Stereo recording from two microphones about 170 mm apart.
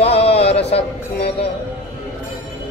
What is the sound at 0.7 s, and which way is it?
Speech, 35° left (ahead or behind).